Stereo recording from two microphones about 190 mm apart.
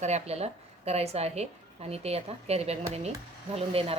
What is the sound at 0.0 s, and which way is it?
A woman's voice, 35° right (ahead or behind).